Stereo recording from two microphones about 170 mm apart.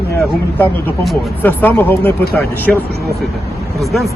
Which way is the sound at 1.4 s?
10° left (ahead or behind).